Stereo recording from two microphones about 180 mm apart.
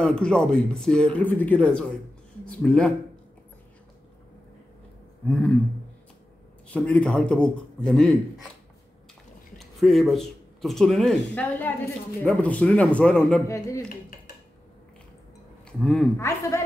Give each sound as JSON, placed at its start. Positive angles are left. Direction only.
{"t": 0.0, "sound": "speech", "side_deg": 5}
{"t": 5.2, "sound": "a sound", "side_deg": 5}
{"t": 6.7, "sound": "speech", "side_deg": 5}
{"t": 9.6, "sound": "a man's voice", "side_deg": 0}
{"t": 13.5, "sound": "a man's voice", "side_deg": 15}
{"t": 15.6, "sound": "speech", "side_deg": 5}
{"t": 16.2, "sound": "a man's voice", "side_deg": 15}